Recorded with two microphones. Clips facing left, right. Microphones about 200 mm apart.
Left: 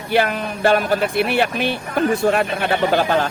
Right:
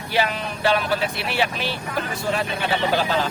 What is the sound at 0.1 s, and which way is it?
Speech, 55° left (ahead or behind).